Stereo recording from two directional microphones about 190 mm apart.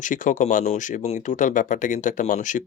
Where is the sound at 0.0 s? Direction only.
45° left (ahead or behind).